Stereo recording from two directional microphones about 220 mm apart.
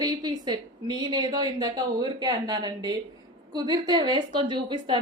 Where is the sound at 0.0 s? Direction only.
20° right (ahead or behind).